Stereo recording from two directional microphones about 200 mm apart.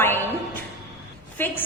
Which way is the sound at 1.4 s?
10° left (ahead or behind).